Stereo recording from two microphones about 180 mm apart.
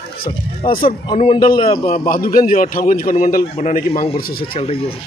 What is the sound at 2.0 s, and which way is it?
A man's voice, 50° left (ahead or behind).